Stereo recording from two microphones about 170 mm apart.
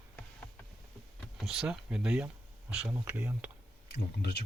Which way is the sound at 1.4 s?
5° right (ahead or behind).